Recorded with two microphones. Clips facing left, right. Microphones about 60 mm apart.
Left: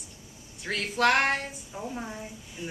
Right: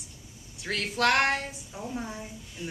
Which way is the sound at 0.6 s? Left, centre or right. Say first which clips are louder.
Left 1 dB; centre.